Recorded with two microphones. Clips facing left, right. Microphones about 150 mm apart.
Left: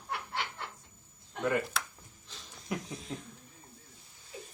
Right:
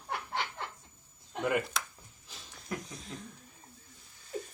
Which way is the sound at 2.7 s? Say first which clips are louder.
Left 2 dB; 15° left (ahead or behind).